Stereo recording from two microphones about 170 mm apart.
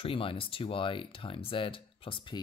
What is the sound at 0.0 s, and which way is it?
Speech, 30° left (ahead or behind).